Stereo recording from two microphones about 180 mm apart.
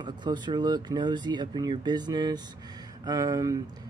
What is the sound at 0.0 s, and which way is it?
Speech, 25° right (ahead or behind).